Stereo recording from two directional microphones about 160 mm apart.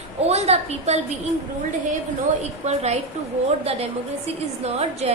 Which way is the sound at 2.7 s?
40° right (ahead or behind).